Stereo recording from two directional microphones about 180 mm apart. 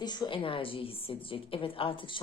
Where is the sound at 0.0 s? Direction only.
25° left (ahead or behind).